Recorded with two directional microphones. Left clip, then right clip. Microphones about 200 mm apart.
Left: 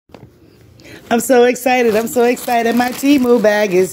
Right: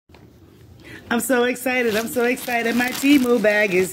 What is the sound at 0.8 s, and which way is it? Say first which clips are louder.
A woman's voice: left 7 dB; 20° left (ahead or behind).